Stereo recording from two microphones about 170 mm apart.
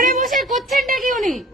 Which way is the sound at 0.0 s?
50° right (ahead or behind).